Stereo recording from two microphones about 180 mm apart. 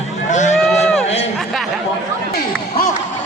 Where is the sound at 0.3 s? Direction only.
40° left (ahead or behind).